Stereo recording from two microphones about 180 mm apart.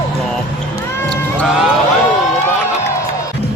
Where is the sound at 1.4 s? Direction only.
Centre (ahead or behind).